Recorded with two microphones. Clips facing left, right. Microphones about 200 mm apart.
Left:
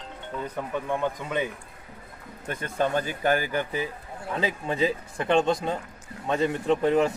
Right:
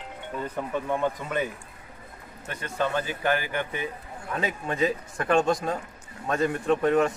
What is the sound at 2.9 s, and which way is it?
A man's voice, 45° left (ahead or behind).